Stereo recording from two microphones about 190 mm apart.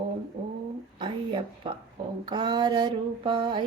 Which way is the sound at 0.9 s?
25° right (ahead or behind).